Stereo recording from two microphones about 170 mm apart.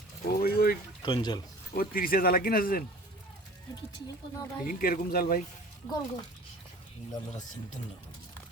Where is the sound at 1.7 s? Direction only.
60° left (ahead or behind).